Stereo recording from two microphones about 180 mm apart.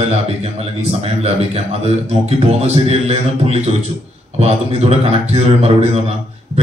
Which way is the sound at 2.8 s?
35° right (ahead or behind).